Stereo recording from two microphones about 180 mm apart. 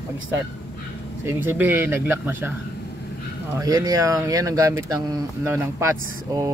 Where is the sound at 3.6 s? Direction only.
20° right (ahead or behind).